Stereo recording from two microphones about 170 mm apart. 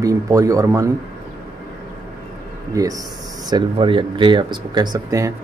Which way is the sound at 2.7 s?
20° right (ahead or behind).